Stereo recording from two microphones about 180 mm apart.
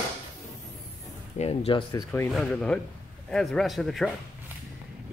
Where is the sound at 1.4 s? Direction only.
30° left (ahead or behind).